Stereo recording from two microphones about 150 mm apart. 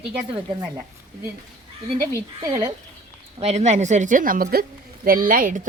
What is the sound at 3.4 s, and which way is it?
Speech, 45° right (ahead or behind).